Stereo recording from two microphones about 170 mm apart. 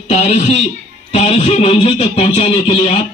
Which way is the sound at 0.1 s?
40° left (ahead or behind).